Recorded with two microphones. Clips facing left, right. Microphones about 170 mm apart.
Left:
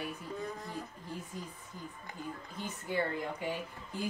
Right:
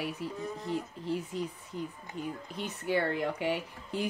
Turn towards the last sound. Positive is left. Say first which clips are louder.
# right 5 dB
turn(degrees=-75)  # may be behind; listen again after turning